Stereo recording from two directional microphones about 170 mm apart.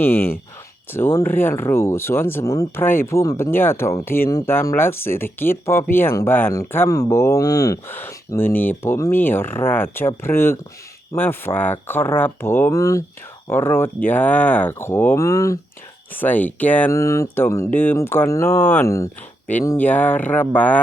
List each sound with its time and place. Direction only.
0.0 s speech: 15° left (ahead or behind)